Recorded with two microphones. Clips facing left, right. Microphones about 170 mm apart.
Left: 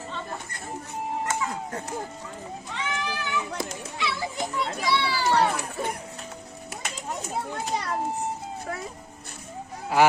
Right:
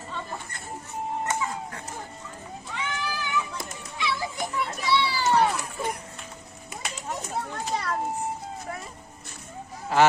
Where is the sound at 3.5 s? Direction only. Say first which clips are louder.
Left 5 dB; 85° left.